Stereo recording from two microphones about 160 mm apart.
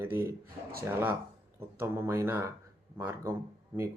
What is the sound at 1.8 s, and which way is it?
Speech, 15° right (ahead or behind).